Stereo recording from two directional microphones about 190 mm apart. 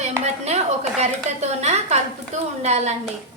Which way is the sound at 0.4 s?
35° right (ahead or behind).